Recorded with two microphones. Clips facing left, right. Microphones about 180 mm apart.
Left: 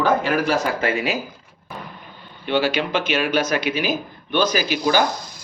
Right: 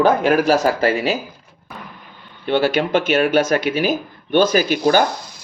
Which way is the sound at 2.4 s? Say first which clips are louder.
Right 3 dB; 50° right (ahead or behind).